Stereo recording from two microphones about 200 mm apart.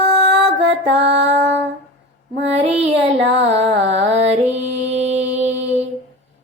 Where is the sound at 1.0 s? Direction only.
65° right (ahead or behind).